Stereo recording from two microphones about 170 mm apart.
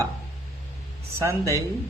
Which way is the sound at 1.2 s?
15° right (ahead or behind).